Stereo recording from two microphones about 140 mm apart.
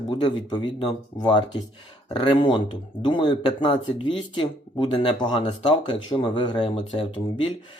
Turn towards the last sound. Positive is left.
turn(degrees=40)  # may be behind; listen again after turning